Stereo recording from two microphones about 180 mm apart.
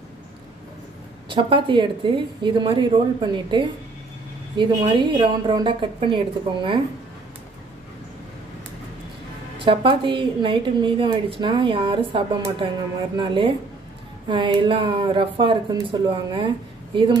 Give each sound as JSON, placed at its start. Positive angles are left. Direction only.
{"t": 1.3, "sound": "a woman's voice", "side_deg": -25}
{"t": 9.7, "sound": "a woman's voice", "side_deg": -30}